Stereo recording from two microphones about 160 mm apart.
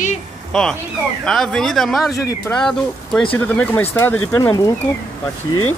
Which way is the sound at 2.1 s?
20° left (ahead or behind).